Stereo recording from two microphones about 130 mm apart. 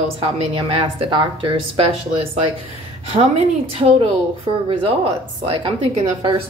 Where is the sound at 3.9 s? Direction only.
45° right (ahead or behind).